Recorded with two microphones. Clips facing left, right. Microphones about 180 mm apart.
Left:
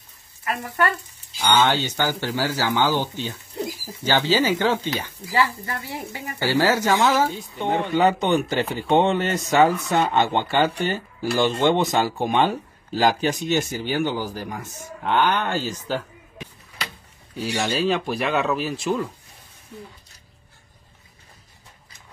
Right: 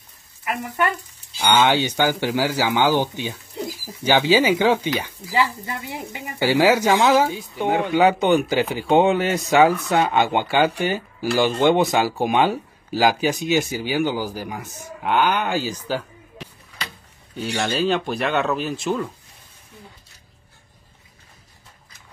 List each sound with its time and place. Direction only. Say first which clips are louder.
0.5 s speech: even; 15° right (ahead or behind); by 16.1 s centre (ahead or behind)
17.4 s speech: right 1 dB; 5° left (ahead or behind)